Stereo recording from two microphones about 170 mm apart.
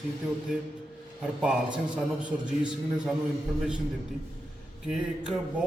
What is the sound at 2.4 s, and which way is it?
Speech, 5° right (ahead or behind).